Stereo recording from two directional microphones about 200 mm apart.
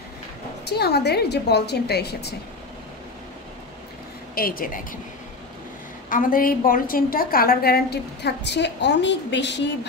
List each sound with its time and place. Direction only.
0.7 s a woman's voice: 55° left (ahead or behind)
4.4 s a woman's voice: 45° left (ahead or behind)
6.0 s a woman's voice: 45° left (ahead or behind); by 9.7 s 60° left (ahead or behind)